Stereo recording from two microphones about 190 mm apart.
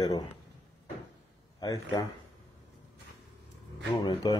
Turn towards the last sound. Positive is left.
turn(degrees=20)  # may be behind; listen again after turning